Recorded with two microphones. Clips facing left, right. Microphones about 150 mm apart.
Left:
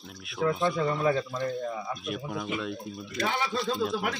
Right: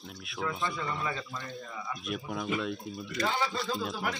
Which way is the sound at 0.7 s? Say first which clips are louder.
Left 9 dB; 50° left (ahead or behind).